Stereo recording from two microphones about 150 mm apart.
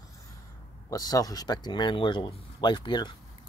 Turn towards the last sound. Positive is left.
turn(degrees=30)  # may be behind; listen again after turning